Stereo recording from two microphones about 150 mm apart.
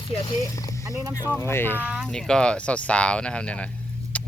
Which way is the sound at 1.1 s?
15° left (ahead or behind).